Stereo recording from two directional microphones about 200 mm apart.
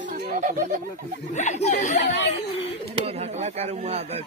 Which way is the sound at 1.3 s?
35° left (ahead or behind).